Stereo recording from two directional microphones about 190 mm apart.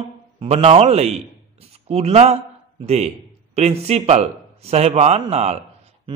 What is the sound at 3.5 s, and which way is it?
A man's voice, 35° right (ahead or behind).